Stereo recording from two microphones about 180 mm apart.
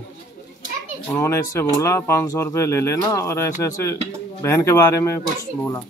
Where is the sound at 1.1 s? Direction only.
15° left (ahead or behind).